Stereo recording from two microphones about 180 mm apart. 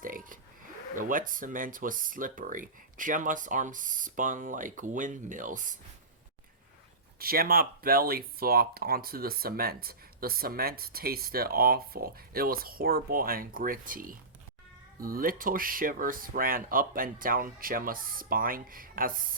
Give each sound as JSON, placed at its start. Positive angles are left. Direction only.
{"t": 0.0, "sound": "oink", "side_deg": -50}
{"t": 0.9, "sound": "speech", "side_deg": -50}
{"t": 7.2, "sound": "speech", "side_deg": -55}